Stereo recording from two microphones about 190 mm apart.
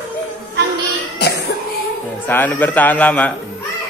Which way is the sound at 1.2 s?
60° left (ahead or behind).